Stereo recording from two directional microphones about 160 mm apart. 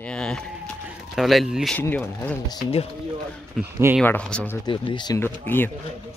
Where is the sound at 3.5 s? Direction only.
15° right (ahead or behind).